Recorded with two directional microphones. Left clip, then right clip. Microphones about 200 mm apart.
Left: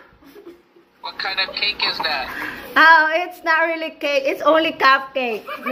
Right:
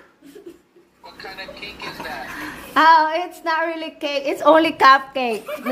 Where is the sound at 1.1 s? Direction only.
30° left (ahead or behind).